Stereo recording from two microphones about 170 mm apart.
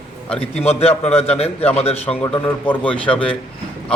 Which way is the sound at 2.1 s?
10° left (ahead or behind).